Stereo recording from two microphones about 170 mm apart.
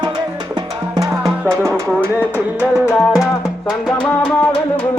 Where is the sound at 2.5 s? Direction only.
5° right (ahead or behind).